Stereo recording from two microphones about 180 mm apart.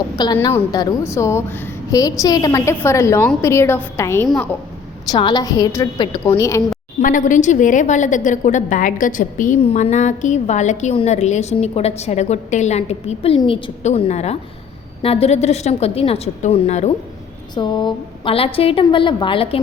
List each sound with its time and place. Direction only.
0.2 s a woman's voice: 20° left (ahead or behind)
7.0 s a woman's voice: 45° left (ahead or behind)
17.5 s a woman's voice: 25° left (ahead or behind)